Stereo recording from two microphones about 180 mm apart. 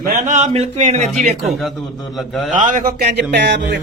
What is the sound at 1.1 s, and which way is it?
Speech, centre (ahead or behind).